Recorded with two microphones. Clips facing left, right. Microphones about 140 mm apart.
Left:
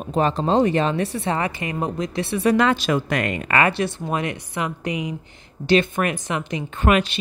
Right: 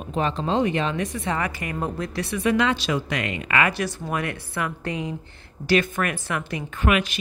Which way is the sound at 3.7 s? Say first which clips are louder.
Left 3 dB; 25° left (ahead or behind).